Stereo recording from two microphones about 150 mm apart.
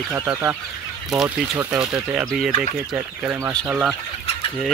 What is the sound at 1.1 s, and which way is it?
Speech, 5° right (ahead or behind).